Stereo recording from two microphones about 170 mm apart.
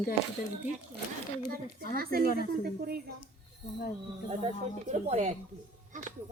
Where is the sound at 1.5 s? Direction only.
60° right (ahead or behind).